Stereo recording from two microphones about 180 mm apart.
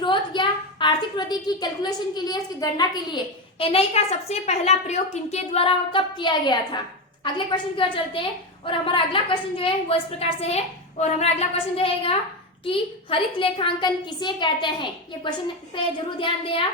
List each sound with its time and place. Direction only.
0.0 s a woman's voice: 25° left (ahead or behind)